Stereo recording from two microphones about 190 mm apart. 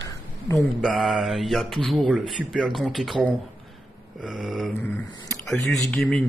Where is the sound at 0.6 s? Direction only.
Centre (ahead or behind).